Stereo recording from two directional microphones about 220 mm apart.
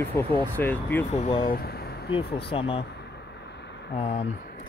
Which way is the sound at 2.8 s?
50° left (ahead or behind).